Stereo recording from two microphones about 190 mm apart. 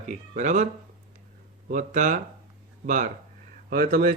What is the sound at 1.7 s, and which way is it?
Speech, 45° right (ahead or behind).